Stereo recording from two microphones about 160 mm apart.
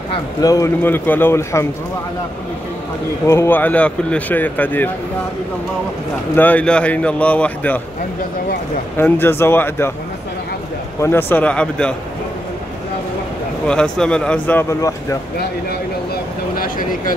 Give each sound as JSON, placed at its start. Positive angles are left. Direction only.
{"t": 0.4, "sound": "speech", "side_deg": 20}
{"t": 3.3, "sound": "speech", "side_deg": 15}
{"t": 6.3, "sound": "speech", "side_deg": 10}
{"t": 8.9, "sound": "speech", "side_deg": 15}
{"t": 11.0, "sound": "speech", "side_deg": 15}
{"t": 13.7, "sound": "speech", "side_deg": 5}
{"t": 16.5, "sound": "a sound", "side_deg": 60}